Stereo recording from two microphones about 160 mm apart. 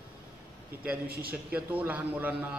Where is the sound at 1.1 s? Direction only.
70° right (ahead or behind).